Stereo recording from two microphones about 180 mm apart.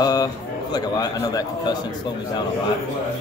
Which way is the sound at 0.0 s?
20° left (ahead or behind).